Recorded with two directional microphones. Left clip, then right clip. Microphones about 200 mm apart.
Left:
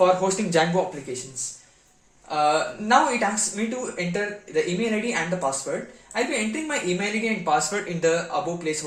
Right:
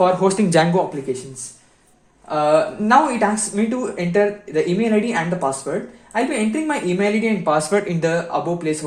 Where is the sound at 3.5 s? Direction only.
40° right (ahead or behind).